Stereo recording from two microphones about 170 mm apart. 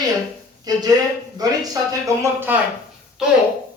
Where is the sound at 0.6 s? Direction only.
20° right (ahead or behind); by 3.3 s 5° right (ahead or behind).